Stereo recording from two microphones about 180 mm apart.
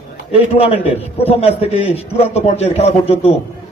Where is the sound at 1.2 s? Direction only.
35° left (ahead or behind).